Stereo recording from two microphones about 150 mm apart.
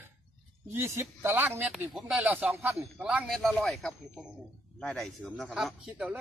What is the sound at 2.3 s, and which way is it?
Speech, 10° right (ahead or behind).